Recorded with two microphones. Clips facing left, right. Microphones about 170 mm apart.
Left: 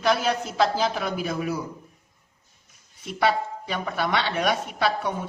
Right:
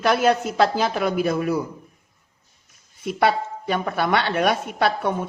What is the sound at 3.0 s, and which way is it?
A woman's voice, 55° right (ahead or behind).